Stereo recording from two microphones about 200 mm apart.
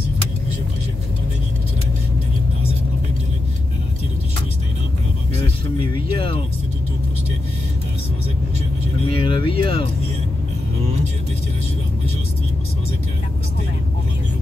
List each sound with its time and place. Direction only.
5.9 s music: 25° left (ahead or behind)
9.1 s vehicle: 25° left (ahead or behind)